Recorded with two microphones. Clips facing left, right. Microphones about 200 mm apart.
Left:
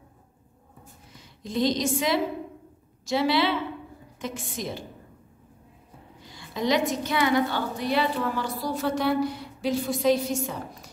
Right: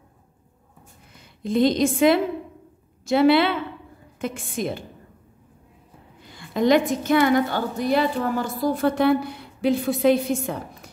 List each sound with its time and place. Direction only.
1.2 s a woman's voice: 55° right (ahead or behind)
6.2 s a woman's voice: 55° right (ahead or behind)